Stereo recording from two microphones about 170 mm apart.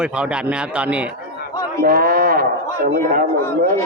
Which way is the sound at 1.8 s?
60° right (ahead or behind).